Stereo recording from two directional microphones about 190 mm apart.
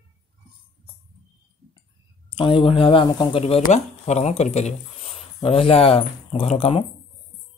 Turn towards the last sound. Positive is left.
turn(degrees=30)  # may be behind; listen again after turning